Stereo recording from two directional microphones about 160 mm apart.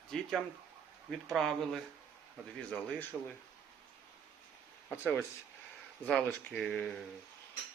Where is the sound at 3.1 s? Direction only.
10° left (ahead or behind).